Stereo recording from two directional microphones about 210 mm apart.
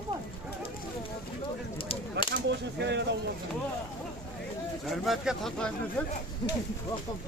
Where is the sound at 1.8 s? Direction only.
25° left (ahead or behind).